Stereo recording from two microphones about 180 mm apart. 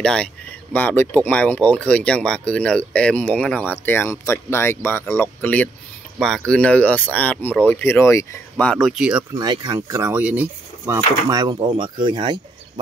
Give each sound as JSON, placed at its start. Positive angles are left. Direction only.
{"t": 0.0, "sound": "speech", "side_deg": 5}
{"t": 9.4, "sound": "speech", "side_deg": -25}